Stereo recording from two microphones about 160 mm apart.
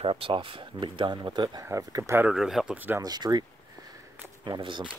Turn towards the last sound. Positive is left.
turn(degrees=-30)  # may be behind; listen again after turning